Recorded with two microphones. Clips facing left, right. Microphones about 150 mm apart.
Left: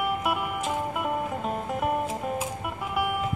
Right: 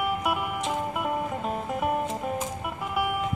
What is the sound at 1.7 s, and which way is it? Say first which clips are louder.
Music: even; centre (ahead or behind).